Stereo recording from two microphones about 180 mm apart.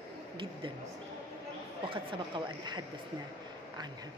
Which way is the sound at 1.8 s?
25° right (ahead or behind).